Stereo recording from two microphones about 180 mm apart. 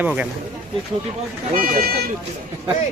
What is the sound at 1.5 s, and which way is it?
Speech, 55° right (ahead or behind).